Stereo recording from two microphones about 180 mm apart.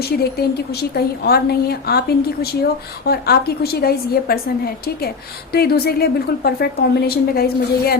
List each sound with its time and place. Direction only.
0.1 s a woman's voice: 60° left (ahead or behind)